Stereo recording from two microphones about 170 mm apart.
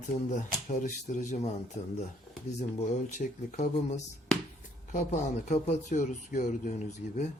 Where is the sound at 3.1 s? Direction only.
45° left (ahead or behind).